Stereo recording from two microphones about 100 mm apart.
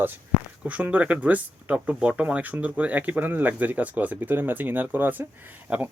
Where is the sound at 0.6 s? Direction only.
15° right (ahead or behind).